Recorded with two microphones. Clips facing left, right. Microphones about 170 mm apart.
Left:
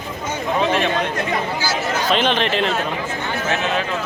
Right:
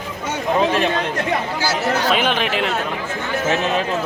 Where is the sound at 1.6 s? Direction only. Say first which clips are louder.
Right 2 dB; 65° right (ahead or behind).